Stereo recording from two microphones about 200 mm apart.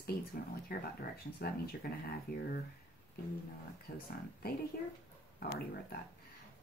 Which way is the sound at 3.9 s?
45° left (ahead or behind).